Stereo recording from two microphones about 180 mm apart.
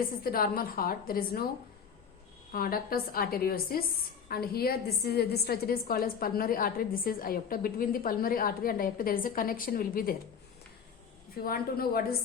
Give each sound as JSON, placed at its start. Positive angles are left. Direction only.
{"t": 0.0, "sound": "a woman's voice", "side_deg": 55}
{"t": 2.5, "sound": "a woman's voice", "side_deg": 55}
{"t": 11.4, "sound": "a woman's voice", "side_deg": 55}